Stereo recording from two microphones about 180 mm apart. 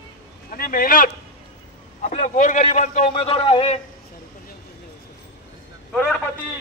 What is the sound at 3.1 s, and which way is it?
Speech, 30° left (ahead or behind).